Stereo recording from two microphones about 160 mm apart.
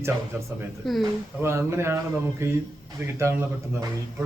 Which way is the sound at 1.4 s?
15° right (ahead or behind).